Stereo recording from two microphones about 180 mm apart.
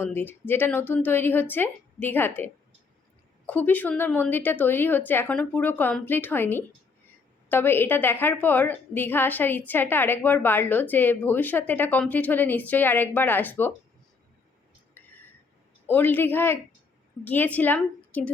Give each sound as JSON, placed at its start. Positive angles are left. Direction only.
{"t": 0.0, "sound": "a woman's voice", "side_deg": 10}
{"t": 14.9, "sound": "a sound", "side_deg": 10}
{"t": 15.9, "sound": "a woman's voice", "side_deg": 10}